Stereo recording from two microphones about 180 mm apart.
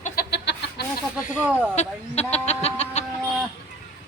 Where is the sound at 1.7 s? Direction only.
35° left (ahead or behind).